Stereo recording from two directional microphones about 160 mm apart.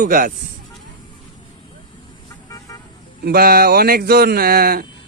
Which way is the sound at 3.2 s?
70° right (ahead or behind).